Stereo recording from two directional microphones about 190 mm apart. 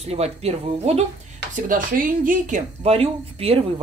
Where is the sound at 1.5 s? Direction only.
45° right (ahead or behind).